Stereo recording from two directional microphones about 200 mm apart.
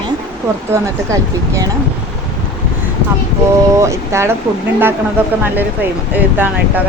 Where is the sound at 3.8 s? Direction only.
15° right (ahead or behind).